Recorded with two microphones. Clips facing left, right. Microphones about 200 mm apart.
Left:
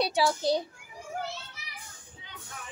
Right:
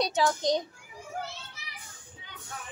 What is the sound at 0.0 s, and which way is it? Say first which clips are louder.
Speech: even; 10° left (ahead or behind).